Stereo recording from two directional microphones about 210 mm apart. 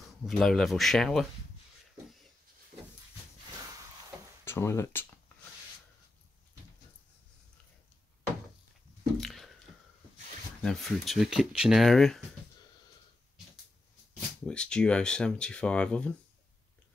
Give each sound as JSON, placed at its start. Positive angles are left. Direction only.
{"t": 0.3, "sound": "speech", "side_deg": 0}
{"t": 2.7, "sound": "vehicle", "side_deg": -30}
{"t": 4.5, "sound": "speech", "side_deg": 10}
{"t": 9.2, "sound": "squish", "side_deg": 0}
{"t": 10.6, "sound": "speech", "side_deg": 0}
{"t": 14.4, "sound": "speech", "side_deg": 5}